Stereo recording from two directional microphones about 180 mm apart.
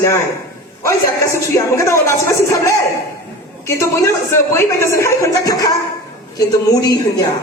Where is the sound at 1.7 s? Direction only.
15° left (ahead or behind).